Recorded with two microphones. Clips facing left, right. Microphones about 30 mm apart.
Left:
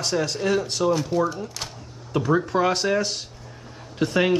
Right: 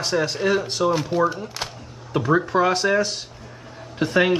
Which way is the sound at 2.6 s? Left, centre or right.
Centre.